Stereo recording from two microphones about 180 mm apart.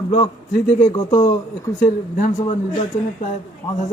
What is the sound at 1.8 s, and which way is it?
Speech, 45° left (ahead or behind).